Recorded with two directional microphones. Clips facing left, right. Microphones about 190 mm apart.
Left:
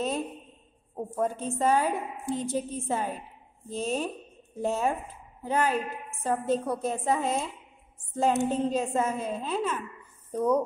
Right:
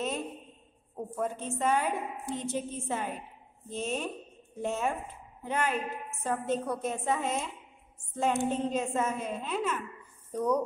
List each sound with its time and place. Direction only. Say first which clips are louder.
0.9 s a woman's voice: left 4 dB; 35° left (ahead or behind)